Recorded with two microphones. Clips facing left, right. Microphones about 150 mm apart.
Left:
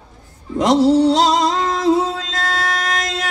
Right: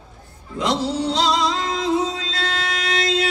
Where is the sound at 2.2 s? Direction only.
50° left (ahead or behind).